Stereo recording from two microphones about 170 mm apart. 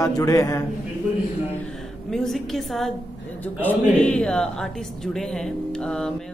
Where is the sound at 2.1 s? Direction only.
Centre (ahead or behind).